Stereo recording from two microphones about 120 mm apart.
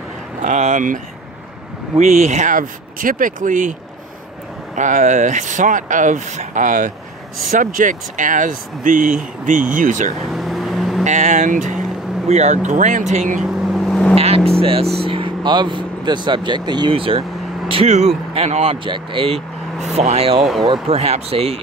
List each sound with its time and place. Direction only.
0.4 s speech: 80° right
2.0 s speech: 70° right (ahead or behind); by 3.7 s 90° right
4.7 s speech: 90° right
10.3 s vehicle: centre (ahead or behind)
11.1 s speech: 80° right
12.3 s speech: 75° right (ahead or behind)
13.4 s vehicle: 5° right (ahead or behind)
14.1 s speech: 55° right (ahead or behind)